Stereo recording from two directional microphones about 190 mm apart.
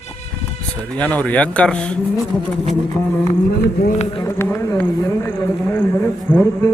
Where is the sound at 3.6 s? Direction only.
55° left (ahead or behind).